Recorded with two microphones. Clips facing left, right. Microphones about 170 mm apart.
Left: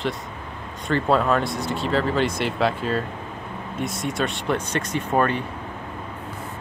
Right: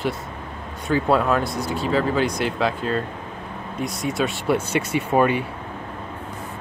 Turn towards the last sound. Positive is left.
turn(degrees=-10)  # may be behind; listen again after turning